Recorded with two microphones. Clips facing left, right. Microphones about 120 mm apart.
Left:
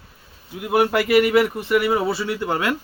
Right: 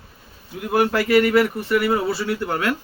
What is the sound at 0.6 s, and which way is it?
A man's voice, 15° left (ahead or behind).